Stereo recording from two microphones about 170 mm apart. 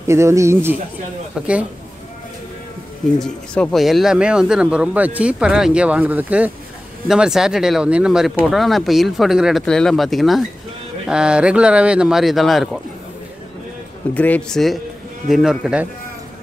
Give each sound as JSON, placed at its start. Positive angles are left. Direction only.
{"t": 0.0, "sound": "speech", "side_deg": -15}
{"t": 3.2, "sound": "speech", "side_deg": 5}
{"t": 14.1, "sound": "speech", "side_deg": 10}